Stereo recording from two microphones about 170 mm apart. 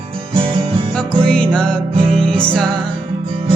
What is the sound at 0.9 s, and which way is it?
Music, 5° left (ahead or behind).